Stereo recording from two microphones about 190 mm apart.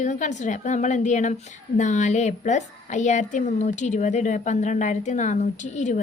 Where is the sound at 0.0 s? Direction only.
40° left (ahead or behind).